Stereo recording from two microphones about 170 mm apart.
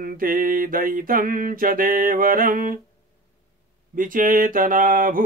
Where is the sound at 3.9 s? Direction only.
55° right (ahead or behind).